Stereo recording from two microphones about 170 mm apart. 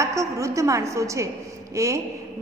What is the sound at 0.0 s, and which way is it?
A woman's voice, 20° right (ahead or behind).